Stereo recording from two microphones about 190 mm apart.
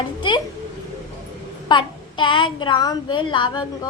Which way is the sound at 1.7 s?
25° left (ahead or behind).